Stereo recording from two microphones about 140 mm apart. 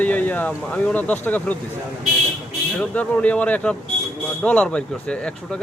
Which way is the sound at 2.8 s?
10° left (ahead or behind).